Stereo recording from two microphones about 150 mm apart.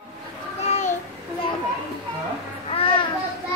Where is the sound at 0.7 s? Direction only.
50° left (ahead or behind).